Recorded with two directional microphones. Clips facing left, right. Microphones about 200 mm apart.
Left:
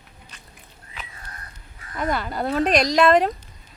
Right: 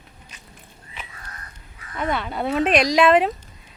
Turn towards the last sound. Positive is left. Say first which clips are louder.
# right 1 dB
turn(degrees=-5)  # may be behind; listen again after turning